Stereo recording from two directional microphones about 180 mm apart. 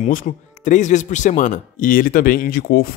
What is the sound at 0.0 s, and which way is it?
Speech, 45° left (ahead or behind).